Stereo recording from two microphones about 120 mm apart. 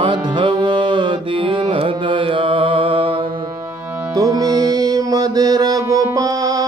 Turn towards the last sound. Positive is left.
turn(degrees=-30)  # may be behind; listen again after turning